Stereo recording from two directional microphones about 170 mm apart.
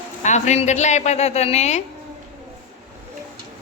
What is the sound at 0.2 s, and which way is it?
A woman's voice, 45° left (ahead or behind).